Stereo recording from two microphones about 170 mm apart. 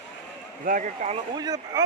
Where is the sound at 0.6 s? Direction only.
50° right (ahead or behind).